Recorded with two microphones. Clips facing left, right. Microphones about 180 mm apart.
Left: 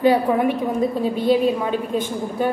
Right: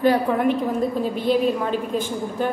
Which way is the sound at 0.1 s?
Centre (ahead or behind).